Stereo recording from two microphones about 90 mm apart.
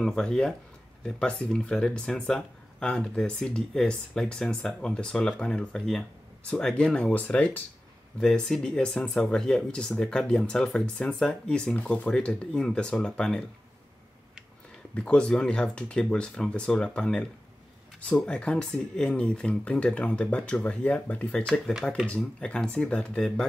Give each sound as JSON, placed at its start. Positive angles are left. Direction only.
{"t": 0.0, "sound": "speech", "side_deg": 5}
{"t": 8.2, "sound": "speech", "side_deg": 5}
{"t": 15.0, "sound": "speech", "side_deg": 10}